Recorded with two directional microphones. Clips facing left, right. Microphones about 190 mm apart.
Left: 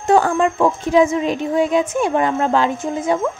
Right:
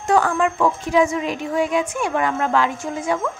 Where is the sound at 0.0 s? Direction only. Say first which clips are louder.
Left 3 dB; 25° left (ahead or behind).